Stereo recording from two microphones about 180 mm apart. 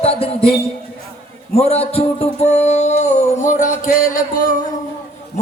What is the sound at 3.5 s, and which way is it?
Speech, 45° left (ahead or behind).